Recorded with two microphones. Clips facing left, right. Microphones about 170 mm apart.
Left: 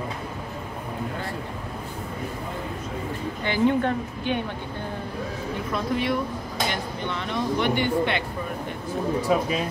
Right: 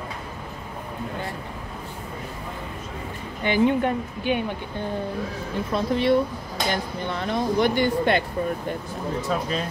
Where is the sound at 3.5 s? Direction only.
15° right (ahead or behind).